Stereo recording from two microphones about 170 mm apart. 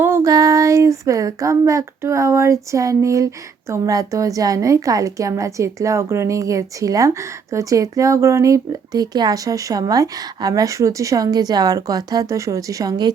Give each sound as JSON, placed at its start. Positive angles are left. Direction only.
{"t": 0.0, "sound": "a woman's voice", "side_deg": -15}